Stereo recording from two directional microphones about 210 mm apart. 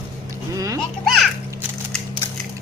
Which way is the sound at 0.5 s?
15° right (ahead or behind).